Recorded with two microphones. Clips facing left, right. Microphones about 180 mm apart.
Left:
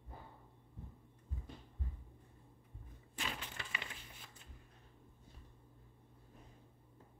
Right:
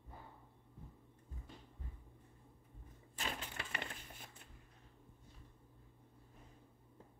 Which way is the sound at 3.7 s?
50° right (ahead or behind).